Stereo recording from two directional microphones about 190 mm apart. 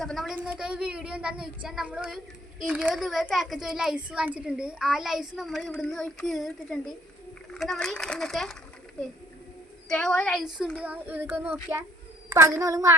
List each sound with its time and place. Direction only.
0.0 s speech: centre (ahead or behind)
9.9 s a child's voice: centre (ahead or behind); by 12.9 s 15° right (ahead or behind)